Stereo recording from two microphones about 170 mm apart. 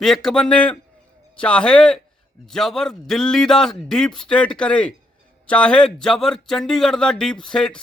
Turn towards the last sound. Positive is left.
turn(degrees=5)  # may be behind; listen again after turning